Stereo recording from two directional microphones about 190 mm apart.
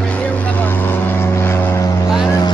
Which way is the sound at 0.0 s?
5° left (ahead or behind).